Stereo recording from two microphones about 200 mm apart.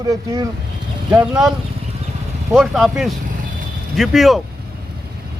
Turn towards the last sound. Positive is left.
turn(degrees=0)  # may be behind; listen again after turning